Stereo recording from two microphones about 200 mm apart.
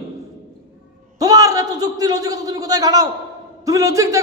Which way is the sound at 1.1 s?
15° right (ahead or behind).